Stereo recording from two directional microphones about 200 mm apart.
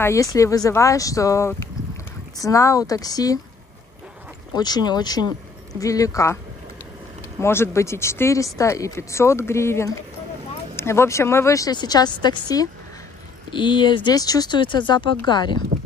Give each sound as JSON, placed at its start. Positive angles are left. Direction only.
{"t": 0.0, "sound": "a woman's voice", "side_deg": 15}
{"t": 4.6, "sound": "a woman's voice", "side_deg": 20}
{"t": 7.3, "sound": "a woman's voice", "side_deg": 10}